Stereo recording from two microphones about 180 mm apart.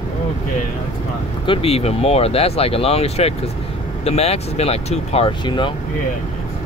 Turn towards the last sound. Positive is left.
turn(degrees=25)  # may be behind; listen again after turning